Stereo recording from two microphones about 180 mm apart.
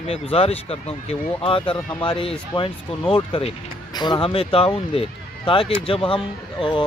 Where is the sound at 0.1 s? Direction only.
35° left (ahead or behind).